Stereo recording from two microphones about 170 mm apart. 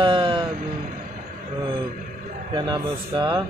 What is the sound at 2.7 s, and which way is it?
Speech, 25° right (ahead or behind).